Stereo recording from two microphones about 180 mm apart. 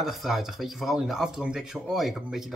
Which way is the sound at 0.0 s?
Centre (ahead or behind).